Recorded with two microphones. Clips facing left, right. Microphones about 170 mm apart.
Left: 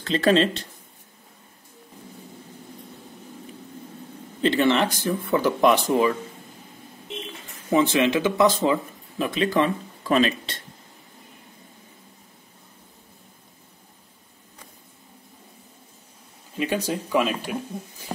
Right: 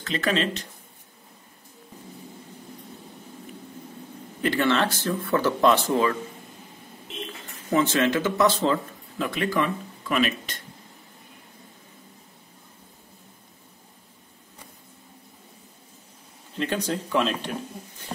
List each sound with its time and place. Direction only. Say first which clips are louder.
0.0 s speech: left 6 dB; 30° left (ahead or behind)
4.4 s speech: left 3 dB; 20° left (ahead or behind)
7.7 s speech: left 2 dB; 15° left (ahead or behind)
10.0 s speech: left 4 dB; 30° left (ahead or behind)
16.5 s speech: left 2 dB; 10° left (ahead or behind)